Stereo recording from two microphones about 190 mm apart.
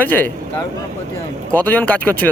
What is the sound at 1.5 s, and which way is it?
Speech, 10° left (ahead or behind).